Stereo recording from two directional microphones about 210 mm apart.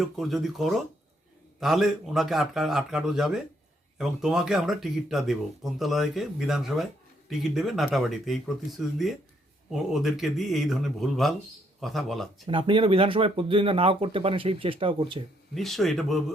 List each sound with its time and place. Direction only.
0.0 s speech: centre (ahead or behind)
9.7 s speech: centre (ahead or behind)
12.5 s speech: 25° right (ahead or behind)
15.5 s speech: centre (ahead or behind)